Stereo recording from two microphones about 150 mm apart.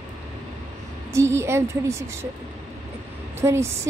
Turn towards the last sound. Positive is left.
turn(degrees=-20)  # may be behind; listen again after turning